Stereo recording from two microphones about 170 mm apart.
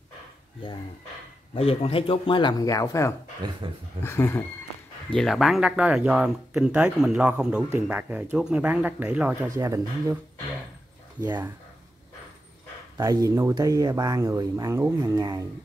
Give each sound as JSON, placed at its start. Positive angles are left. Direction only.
{"t": 1.5, "sound": "speech", "side_deg": 35}
{"t": 3.6, "sound": "speech", "side_deg": -30}
{"t": 4.0, "sound": "speech", "side_deg": 15}
{"t": 5.1, "sound": "speech", "side_deg": 0}
{"t": 12.9, "sound": "speech", "side_deg": -20}